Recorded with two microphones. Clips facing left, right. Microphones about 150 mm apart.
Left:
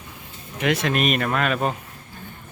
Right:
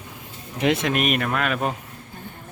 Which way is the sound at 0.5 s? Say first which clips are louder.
Right 1 dB; 25° right (ahead or behind).